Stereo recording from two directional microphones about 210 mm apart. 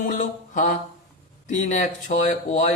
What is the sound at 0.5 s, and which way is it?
Speech, 35° left (ahead or behind).